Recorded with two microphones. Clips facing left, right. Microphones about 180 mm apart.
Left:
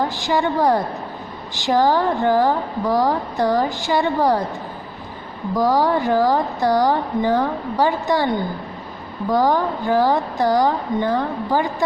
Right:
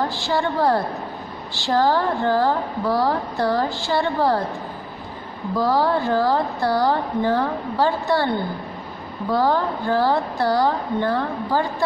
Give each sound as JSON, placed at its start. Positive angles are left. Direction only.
{"t": 0.0, "sound": "a woman's voice", "side_deg": 15}
{"t": 5.6, "sound": "a woman's voice", "side_deg": 15}